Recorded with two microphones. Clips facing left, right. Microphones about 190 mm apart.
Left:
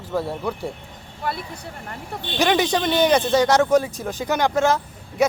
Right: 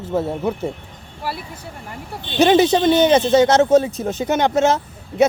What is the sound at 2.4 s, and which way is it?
Speech, 25° right (ahead or behind).